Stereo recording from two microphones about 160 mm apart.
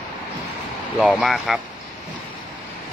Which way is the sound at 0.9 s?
Centre (ahead or behind).